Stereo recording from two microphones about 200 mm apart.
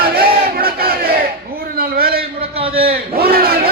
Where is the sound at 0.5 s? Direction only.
50° right (ahead or behind).